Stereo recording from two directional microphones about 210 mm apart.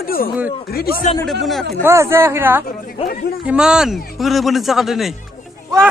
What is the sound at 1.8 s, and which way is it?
Speech, 10° right (ahead or behind).